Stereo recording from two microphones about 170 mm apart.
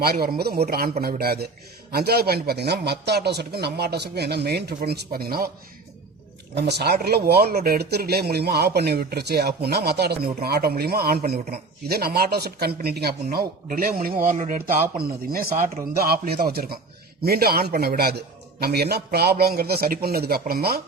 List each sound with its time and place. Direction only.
0.0 s a man's voice: 65° right (ahead or behind)
6.6 s a man's voice: 75° right (ahead or behind)
14.3 s speech: 45° right (ahead or behind)
15.0 s speech: 60° right (ahead or behind)